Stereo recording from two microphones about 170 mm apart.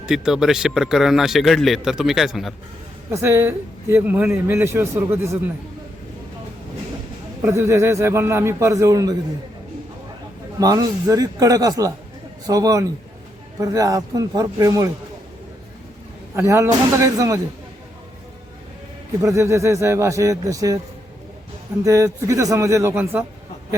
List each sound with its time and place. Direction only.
0.0 s a man's voice: 5° right (ahead or behind)
3.1 s a man's voice: 15° right (ahead or behind)
7.4 s a man's voice: 15° right (ahead or behind)
10.6 s a man's voice: 20° right (ahead or behind)
16.3 s a man's voice: 15° right (ahead or behind)
19.2 s a man's voice: 20° right (ahead or behind)
21.8 s a man's voice: 20° right (ahead or behind)